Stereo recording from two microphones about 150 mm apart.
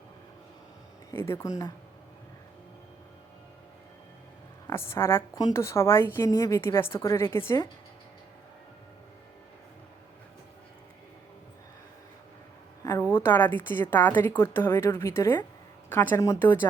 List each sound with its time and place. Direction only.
1.1 s a woman's voice: 15° left (ahead or behind)
4.6 s a woman's voice: 15° left (ahead or behind)
12.8 s a woman's voice: 20° left (ahead or behind)